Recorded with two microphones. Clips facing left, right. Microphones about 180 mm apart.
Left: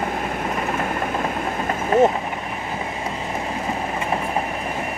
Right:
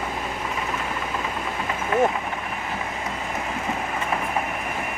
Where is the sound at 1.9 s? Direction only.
35° left (ahead or behind).